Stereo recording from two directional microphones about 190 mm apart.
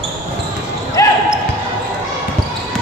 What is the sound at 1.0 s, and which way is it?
Basketball bounce, 15° left (ahead or behind).